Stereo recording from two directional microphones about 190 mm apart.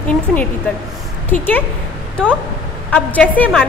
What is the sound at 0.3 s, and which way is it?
Speech, centre (ahead or behind).